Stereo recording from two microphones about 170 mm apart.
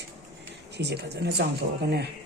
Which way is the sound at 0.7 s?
80° right.